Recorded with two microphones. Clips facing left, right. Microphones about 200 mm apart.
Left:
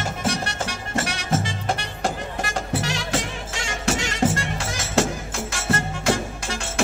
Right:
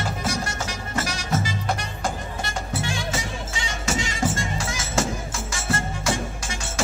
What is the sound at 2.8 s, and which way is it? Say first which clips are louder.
Music: left 2 dB; 85° left.